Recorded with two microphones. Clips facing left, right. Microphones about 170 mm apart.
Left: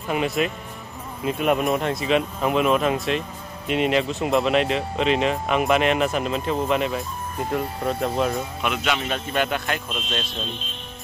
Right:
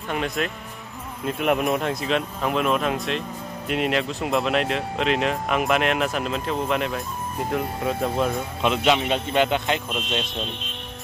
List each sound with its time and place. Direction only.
0.1 s speech: 5° left (ahead or behind)
8.6 s speech: 25° right (ahead or behind)